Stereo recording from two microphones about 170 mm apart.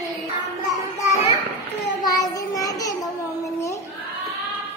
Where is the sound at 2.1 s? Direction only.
20° left (ahead or behind).